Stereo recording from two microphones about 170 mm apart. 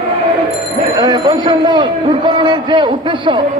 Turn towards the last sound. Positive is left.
turn(degrees=-30)  # may be behind; listen again after turning